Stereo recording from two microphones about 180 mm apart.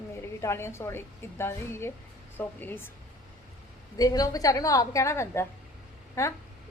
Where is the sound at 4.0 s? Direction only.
20° left (ahead or behind).